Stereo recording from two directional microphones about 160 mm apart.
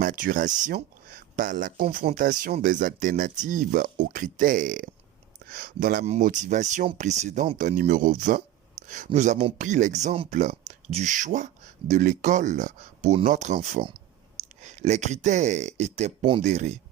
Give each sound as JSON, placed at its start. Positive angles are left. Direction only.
{"t": 0.0, "sound": "speech", "side_deg": -55}
{"t": 5.5, "sound": "speech", "side_deg": -70}
{"t": 6.1, "sound": "speech", "side_deg": -55}
{"t": 7.8, "sound": "speech", "side_deg": -60}
{"t": 8.8, "sound": "a sound", "side_deg": -45}
{"t": 9.1, "sound": "speech", "side_deg": -50}